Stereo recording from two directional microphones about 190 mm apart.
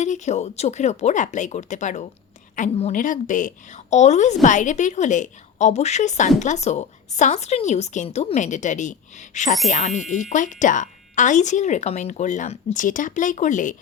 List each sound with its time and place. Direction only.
0.0 s speech: 35° left (ahead or behind)